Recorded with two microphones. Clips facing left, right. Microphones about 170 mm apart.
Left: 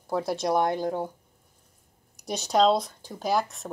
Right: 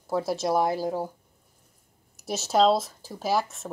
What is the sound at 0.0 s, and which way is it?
Speech, centre (ahead or behind).